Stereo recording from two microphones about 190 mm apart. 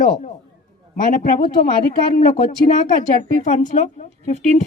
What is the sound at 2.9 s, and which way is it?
Speech, 40° left (ahead or behind).